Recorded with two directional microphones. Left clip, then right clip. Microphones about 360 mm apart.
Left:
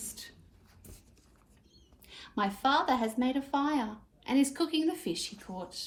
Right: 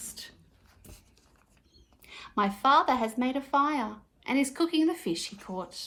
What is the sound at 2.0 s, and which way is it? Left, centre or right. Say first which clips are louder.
A woman's voice: right 4 dB; centre.